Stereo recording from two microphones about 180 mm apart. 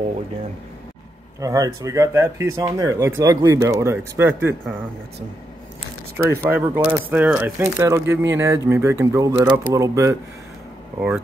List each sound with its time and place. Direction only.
1.4 s speech: 20° right (ahead or behind)
6.1 s speech: 10° right (ahead or behind)
11.0 s speech: 5° right (ahead or behind)